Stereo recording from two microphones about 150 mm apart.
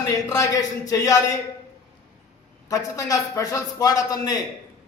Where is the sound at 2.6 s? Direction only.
20° left (ahead or behind).